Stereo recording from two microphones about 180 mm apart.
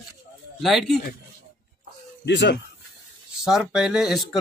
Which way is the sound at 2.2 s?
75° left (ahead or behind).